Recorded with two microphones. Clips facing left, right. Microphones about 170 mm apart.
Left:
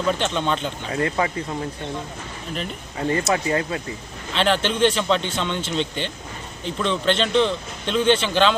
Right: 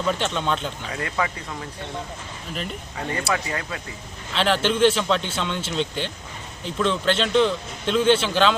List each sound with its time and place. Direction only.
0.2 s a man's voice: centre (ahead or behind)
0.9 s speech: 30° left (ahead or behind)
3.1 s speech: 30° left (ahead or behind)
4.4 s a man's voice: 5° right (ahead or behind)